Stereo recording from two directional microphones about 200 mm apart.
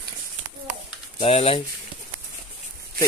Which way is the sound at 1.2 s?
30° left (ahead or behind).